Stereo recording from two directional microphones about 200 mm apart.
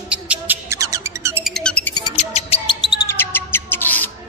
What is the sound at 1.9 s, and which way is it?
Music, 25° left (ahead or behind).